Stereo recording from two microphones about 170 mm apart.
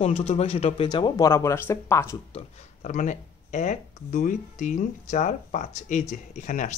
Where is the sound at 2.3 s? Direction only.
45° left (ahead or behind).